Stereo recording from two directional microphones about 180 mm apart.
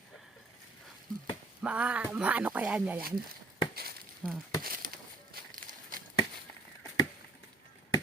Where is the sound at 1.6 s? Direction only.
5° right (ahead or behind).